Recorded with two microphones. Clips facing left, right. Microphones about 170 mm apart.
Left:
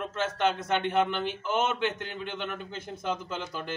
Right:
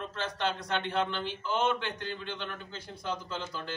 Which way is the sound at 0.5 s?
50° left (ahead or behind).